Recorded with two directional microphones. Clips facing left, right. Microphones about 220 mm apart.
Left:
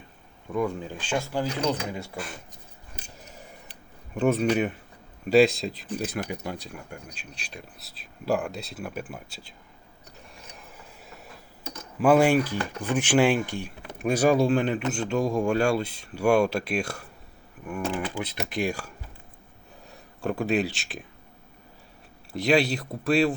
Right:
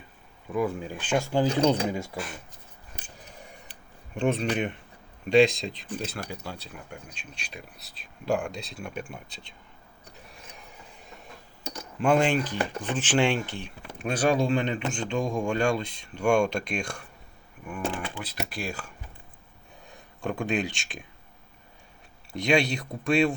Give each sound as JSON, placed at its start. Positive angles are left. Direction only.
{"t": 0.5, "sound": "speech", "side_deg": -5}
{"t": 1.3, "sound": "speech", "side_deg": -30}
{"t": 4.1, "sound": "speech", "side_deg": 5}
{"t": 7.3, "sound": "speech", "side_deg": 0}
{"t": 10.2, "sound": "a sound", "side_deg": 0}
{"t": 11.9, "sound": "speech", "side_deg": 5}
{"t": 18.2, "sound": "speech", "side_deg": 20}
{"t": 19.9, "sound": "speech", "side_deg": 5}
{"t": 22.3, "sound": "speech", "side_deg": 0}